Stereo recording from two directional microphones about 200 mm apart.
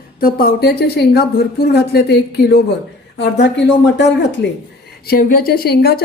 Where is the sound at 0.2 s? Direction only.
50° left (ahead or behind).